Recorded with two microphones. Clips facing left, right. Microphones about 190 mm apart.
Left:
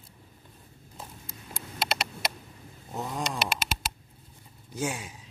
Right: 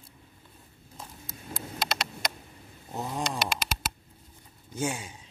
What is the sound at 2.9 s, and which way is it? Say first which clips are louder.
Speech: even; centre (ahead or behind).